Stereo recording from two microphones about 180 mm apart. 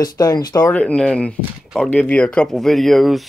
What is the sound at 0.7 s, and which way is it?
Speech, 5° left (ahead or behind).